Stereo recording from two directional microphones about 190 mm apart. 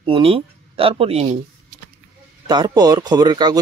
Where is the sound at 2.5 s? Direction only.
20° right (ahead or behind).